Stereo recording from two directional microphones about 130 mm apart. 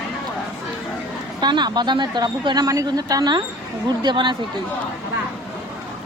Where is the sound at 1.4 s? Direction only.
35° right (ahead or behind).